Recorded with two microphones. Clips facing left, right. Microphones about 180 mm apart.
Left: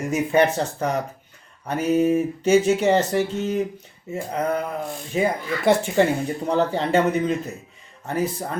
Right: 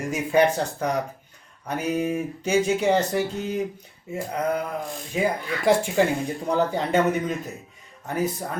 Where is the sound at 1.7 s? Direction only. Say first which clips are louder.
Left 6 dB; centre (ahead or behind).